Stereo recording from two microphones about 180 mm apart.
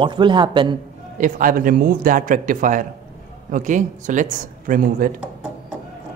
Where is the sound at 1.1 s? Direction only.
45° right (ahead or behind).